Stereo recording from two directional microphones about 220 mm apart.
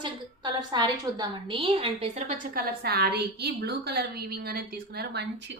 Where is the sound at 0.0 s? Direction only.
20° right (ahead or behind).